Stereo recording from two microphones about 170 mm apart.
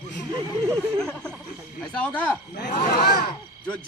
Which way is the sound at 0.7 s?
5° left (ahead or behind).